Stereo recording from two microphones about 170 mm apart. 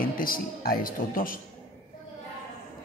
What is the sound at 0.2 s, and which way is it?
Speech, 55° left (ahead or behind).